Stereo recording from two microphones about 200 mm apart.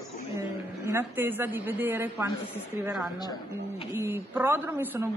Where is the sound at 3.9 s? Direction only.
10° right (ahead or behind).